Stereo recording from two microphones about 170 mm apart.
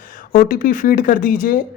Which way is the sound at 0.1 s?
55° left (ahead or behind).